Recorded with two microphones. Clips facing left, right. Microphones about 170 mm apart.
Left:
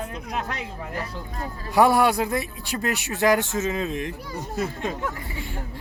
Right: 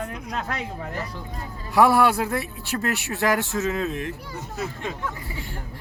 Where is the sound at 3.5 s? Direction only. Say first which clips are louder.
Right 1 dB; 20° left (ahead or behind).